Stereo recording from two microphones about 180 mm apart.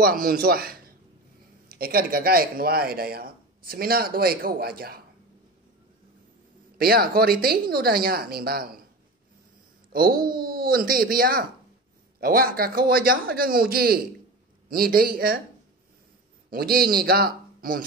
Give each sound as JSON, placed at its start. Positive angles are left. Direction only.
{"t": 0.0, "sound": "a man's voice", "side_deg": -55}
{"t": 6.8, "sound": "speech", "side_deg": -55}
{"t": 9.9, "sound": "speech", "side_deg": -55}
{"t": 16.4, "sound": "a man's voice", "side_deg": -55}